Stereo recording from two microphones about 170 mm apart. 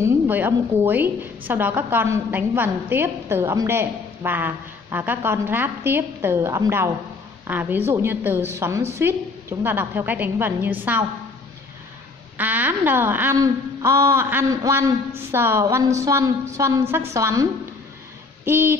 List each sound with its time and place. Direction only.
0.0 s a woman's voice: 15° right (ahead or behind)
12.4 s a woman's voice: 10° right (ahead or behind)